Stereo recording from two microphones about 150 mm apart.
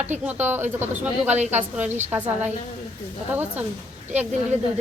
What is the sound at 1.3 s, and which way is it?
Speech, 45° right (ahead or behind).